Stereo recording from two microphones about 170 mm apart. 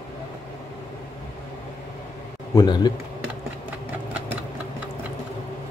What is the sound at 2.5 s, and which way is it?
Speech, 25° left (ahead or behind).